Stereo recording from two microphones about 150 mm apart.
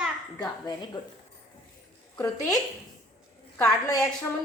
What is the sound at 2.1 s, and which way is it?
Speech, 20° left (ahead or behind).